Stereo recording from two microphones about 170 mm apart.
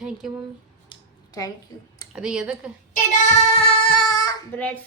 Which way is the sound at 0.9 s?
30° left (ahead or behind).